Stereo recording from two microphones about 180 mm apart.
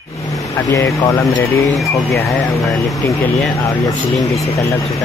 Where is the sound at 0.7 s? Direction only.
20° left (ahead or behind).